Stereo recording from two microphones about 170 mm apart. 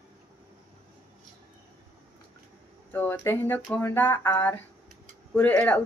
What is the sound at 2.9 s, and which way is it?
Speech, 10° left (ahead or behind).